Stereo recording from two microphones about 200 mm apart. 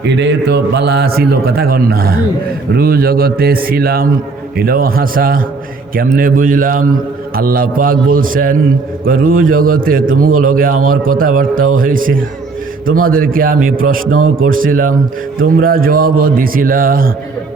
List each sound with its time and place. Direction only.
0.0 s a man's voice: 60° right (ahead or behind)